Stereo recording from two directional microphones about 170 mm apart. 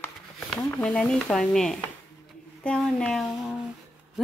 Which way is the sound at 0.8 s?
5° left (ahead or behind).